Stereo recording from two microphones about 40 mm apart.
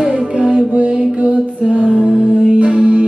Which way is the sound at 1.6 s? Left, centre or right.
Right.